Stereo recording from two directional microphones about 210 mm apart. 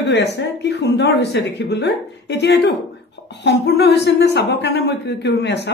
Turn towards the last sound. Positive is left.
turn(degrees=55)  # may be behind; listen again after turning